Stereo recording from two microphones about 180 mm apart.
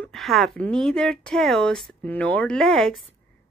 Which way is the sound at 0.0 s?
Centre (ahead or behind).